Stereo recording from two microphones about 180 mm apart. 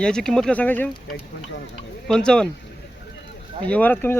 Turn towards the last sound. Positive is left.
turn(degrees=10)  # may be behind; listen again after turning